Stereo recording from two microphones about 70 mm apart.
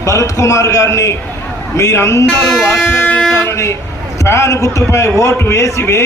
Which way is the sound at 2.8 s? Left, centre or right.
Left.